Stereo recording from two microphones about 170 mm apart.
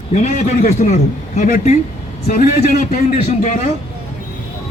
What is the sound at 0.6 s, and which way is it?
A man's voice, 40° left (ahead or behind).